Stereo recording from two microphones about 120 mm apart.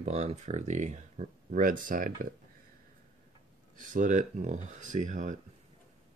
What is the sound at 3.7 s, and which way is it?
Speech, 90° right.